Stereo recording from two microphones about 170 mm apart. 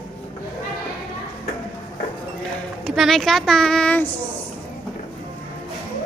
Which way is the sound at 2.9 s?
Centre (ahead or behind).